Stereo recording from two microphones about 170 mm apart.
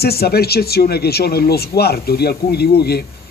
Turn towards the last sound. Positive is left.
turn(degrees=70)  # may be behind; listen again after turning